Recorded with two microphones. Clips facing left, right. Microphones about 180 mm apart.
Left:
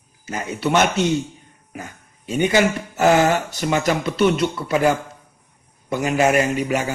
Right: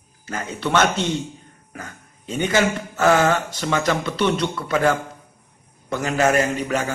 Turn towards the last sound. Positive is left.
turn(degrees=10)  # may be behind; listen again after turning